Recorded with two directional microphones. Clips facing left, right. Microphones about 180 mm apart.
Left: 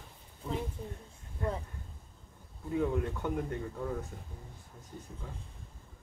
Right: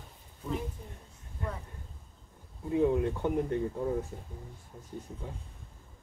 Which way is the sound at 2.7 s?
20° right (ahead or behind).